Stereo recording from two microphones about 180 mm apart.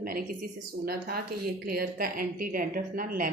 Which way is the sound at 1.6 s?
55° right (ahead or behind).